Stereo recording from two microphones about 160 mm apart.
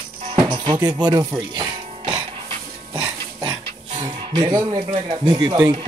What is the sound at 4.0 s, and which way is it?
Music, 30° right (ahead or behind).